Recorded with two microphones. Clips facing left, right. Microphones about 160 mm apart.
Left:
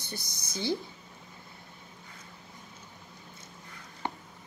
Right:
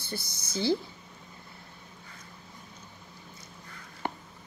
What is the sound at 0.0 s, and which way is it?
Speech, 20° left (ahead or behind).